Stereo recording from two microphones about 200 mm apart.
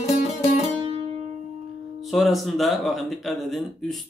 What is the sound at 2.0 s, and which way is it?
Speech, centre (ahead or behind).